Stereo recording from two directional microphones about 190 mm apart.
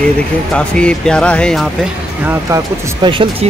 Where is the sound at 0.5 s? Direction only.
5° left (ahead or behind).